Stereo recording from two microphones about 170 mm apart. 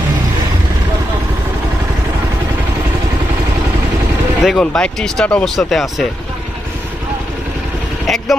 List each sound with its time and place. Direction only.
4.4 s speech: 5° left (ahead or behind)
8.0 s vehicle: centre (ahead or behind)